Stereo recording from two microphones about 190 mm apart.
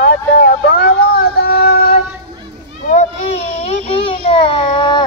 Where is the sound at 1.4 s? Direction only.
50° left (ahead or behind).